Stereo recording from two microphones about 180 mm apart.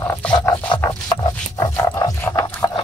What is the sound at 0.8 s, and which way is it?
Dog, 15° left (ahead or behind).